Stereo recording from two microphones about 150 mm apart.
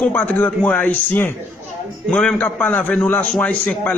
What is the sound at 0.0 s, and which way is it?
A man's voice, 10° left (ahead or behind).